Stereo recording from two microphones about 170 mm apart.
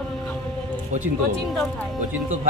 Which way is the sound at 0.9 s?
45° right (ahead or behind).